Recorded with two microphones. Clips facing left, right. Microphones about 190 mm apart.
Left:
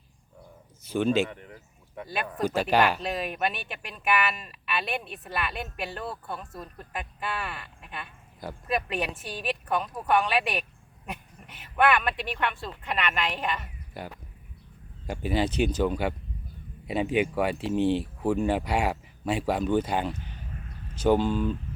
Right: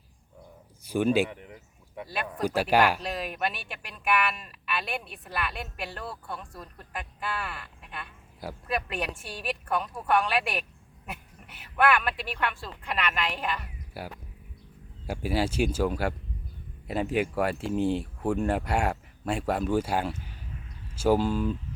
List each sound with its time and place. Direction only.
0.9 s a sound: 10° right (ahead or behind)
2.0 s speech: centre (ahead or behind)
2.6 s speech: 10° right (ahead or behind)
3.0 s speech: centre (ahead or behind)
20.6 s a sound: 55° left (ahead or behind)
21.0 s speech: 5° right (ahead or behind)